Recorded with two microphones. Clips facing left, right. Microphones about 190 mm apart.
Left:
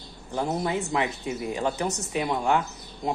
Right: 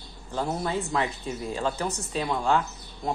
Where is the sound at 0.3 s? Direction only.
15° left (ahead or behind).